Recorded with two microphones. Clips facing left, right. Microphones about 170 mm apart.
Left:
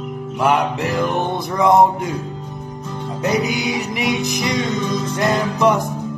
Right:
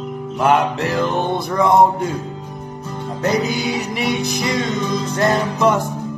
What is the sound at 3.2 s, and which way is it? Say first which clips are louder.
Music: right 1 dB; 15° left (ahead or behind).